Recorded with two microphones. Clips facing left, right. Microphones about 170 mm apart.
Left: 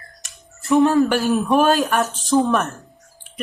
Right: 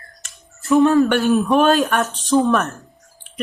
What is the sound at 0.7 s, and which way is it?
Speech, 20° left (ahead or behind).